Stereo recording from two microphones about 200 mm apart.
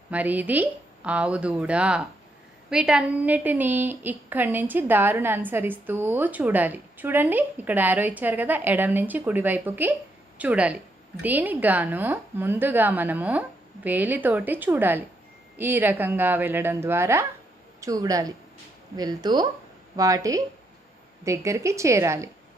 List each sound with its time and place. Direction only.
0.1 s a woman's voice: 10° right (ahead or behind)